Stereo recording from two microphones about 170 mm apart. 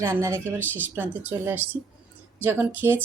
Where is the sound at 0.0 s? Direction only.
15° right (ahead or behind).